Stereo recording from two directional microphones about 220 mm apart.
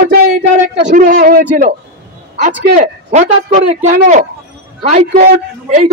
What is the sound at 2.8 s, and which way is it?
A man's voice, 35° right (ahead or behind).